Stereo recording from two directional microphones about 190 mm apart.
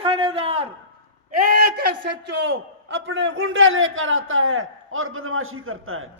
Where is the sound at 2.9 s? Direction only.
90° right.